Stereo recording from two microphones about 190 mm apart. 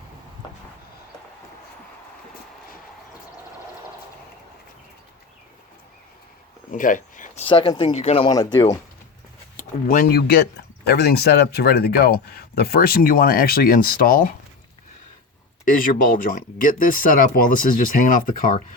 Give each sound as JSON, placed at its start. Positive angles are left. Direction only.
{"t": 6.7, "sound": "a sound", "side_deg": 45}
{"t": 7.4, "sound": "speech", "side_deg": 25}
{"t": 9.6, "sound": "speech", "side_deg": 45}
{"t": 15.7, "sound": "speech", "side_deg": 45}